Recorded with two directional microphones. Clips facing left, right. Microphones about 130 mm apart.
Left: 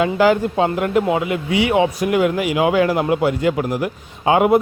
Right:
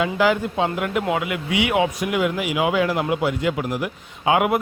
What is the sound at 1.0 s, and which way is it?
Speech, 30° left (ahead or behind).